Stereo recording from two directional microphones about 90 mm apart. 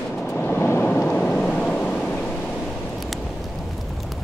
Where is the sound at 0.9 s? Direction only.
15° left (ahead or behind).